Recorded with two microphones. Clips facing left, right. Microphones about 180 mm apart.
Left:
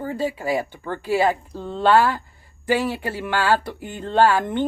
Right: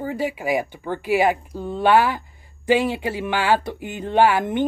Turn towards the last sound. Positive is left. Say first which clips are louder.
# even
turn(degrees=-15)  # may be behind; listen again after turning